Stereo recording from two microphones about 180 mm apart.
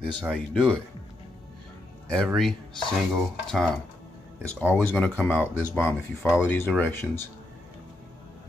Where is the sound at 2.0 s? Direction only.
Centre (ahead or behind).